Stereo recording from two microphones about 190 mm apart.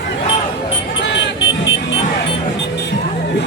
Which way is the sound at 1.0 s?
70° left (ahead or behind).